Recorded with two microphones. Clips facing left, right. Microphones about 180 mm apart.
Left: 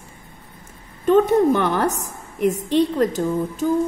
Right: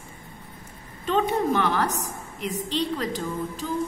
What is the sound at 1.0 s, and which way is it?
A woman's voice, 50° left (ahead or behind).